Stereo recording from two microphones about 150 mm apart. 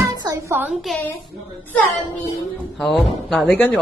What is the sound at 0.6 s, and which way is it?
Speech, centre (ahead or behind).